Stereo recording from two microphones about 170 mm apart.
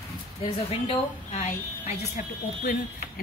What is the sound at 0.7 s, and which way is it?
Speech, 40° left (ahead or behind).